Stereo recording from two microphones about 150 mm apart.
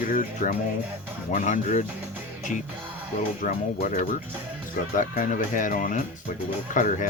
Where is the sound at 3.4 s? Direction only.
60° left (ahead or behind).